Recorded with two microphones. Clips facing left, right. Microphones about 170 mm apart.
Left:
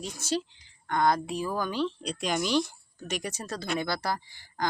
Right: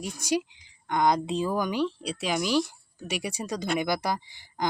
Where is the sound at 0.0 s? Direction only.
15° right (ahead or behind).